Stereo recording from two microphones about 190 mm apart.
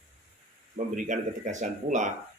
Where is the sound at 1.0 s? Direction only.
40° right (ahead or behind).